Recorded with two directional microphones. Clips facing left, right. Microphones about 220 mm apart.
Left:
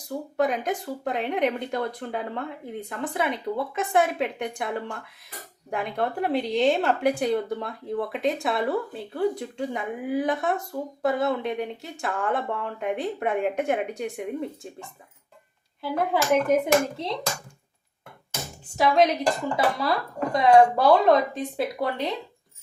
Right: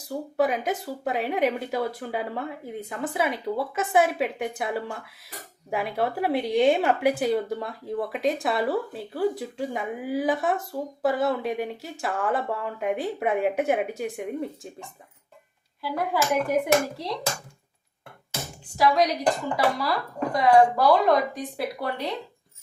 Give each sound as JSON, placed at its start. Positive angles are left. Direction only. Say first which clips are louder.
{"t": 0.1, "sound": "speech", "louder": "right 1 dB", "side_deg": -5}
{"t": 15.8, "sound": "speech", "louder": "left 1 dB", "side_deg": 20}
{"t": 18.8, "sound": "speech", "louder": "left 2 dB", "side_deg": 25}
{"t": 20.3, "sound": "speech", "louder": "left 2 dB", "side_deg": 25}